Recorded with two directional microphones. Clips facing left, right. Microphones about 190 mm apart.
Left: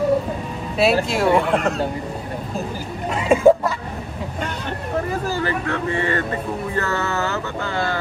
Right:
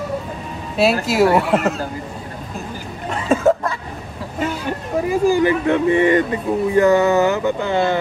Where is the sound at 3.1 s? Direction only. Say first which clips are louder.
Left 2 dB; 10° left (ahead or behind).